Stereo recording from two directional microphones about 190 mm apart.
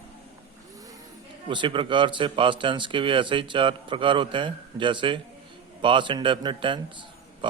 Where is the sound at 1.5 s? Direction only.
25° right (ahead or behind).